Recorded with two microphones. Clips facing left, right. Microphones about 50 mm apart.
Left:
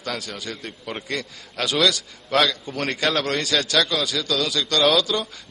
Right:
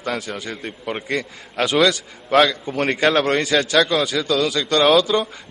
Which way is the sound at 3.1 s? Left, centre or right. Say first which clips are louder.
Right 5 dB; centre.